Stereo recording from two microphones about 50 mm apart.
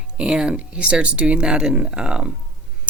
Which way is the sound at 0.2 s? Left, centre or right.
Centre.